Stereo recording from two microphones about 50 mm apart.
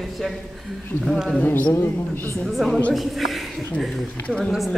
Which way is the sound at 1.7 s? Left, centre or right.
Left.